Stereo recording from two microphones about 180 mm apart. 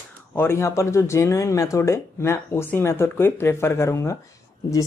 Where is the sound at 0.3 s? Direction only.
10° left (ahead or behind).